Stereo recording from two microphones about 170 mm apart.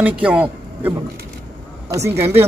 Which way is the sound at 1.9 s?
15° right (ahead or behind).